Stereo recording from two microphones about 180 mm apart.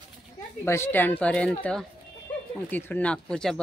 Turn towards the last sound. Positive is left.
turn(degrees=5)  # may be behind; listen again after turning